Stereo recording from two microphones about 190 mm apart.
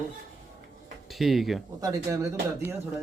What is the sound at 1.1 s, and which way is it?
Speech, centre (ahead or behind).